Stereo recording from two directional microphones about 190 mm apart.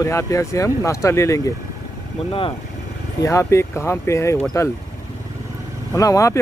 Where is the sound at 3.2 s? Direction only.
15° left (ahead or behind).